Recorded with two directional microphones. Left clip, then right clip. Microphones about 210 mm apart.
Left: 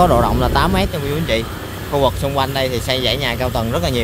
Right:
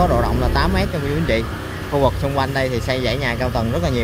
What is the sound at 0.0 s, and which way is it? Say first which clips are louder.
Speech: left 4 dB; 15° left (ahead or behind).